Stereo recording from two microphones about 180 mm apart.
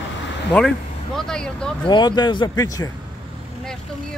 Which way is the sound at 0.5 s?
10° left (ahead or behind).